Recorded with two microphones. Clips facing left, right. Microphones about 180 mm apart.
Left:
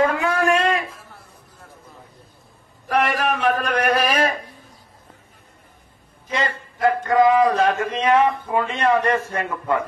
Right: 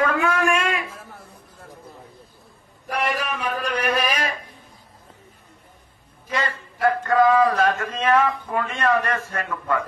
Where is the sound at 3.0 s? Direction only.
50° left (ahead or behind).